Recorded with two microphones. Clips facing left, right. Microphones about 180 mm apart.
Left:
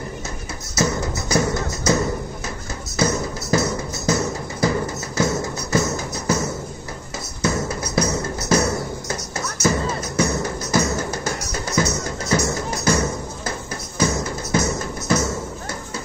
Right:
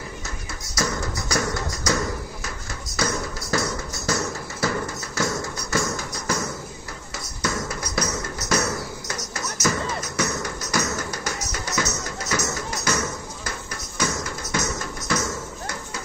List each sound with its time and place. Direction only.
0.7 s music: 25° left (ahead or behind)
7.4 s music: 25° left (ahead or behind)